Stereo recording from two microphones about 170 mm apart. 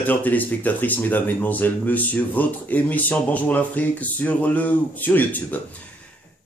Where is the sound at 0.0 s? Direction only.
10° left (ahead or behind).